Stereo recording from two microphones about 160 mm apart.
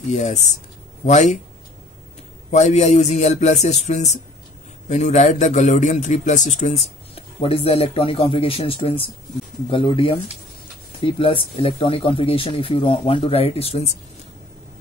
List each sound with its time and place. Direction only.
0.1 s a man's voice: 45° left (ahead or behind)
2.5 s a man's voice: 45° left (ahead or behind)